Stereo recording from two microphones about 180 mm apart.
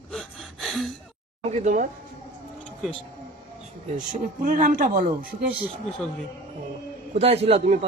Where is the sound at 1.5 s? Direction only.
45° right (ahead or behind).